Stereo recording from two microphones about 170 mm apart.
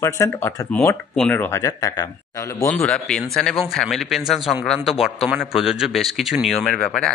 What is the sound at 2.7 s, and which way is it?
A man's voice, 5° left (ahead or behind).